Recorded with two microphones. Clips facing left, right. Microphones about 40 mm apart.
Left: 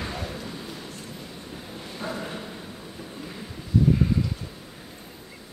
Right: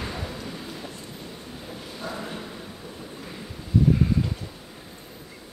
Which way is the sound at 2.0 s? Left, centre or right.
Centre.